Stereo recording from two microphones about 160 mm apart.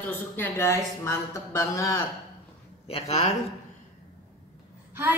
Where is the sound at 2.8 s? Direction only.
40° left (ahead or behind).